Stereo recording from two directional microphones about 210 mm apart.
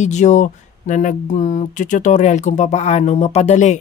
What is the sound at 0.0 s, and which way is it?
Speech, 35° left (ahead or behind).